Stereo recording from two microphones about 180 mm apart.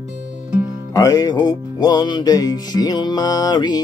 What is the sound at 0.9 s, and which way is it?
Music, 20° left (ahead or behind).